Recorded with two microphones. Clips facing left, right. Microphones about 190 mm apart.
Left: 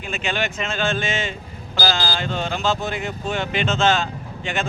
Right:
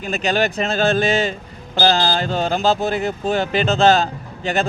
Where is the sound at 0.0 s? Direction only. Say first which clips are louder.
Right 6 dB; 40° right (ahead or behind).